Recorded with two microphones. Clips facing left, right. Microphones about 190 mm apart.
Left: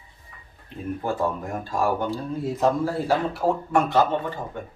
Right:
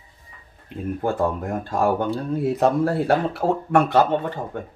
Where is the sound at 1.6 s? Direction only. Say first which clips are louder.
Right 3 dB; 60° right (ahead or behind).